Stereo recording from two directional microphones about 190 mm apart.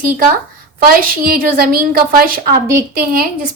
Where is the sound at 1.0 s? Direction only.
50° right (ahead or behind).